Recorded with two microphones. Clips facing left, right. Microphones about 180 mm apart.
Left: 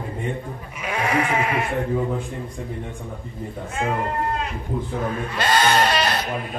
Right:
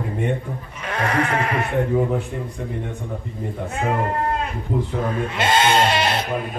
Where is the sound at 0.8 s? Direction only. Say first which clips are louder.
Even; 10° left (ahead or behind).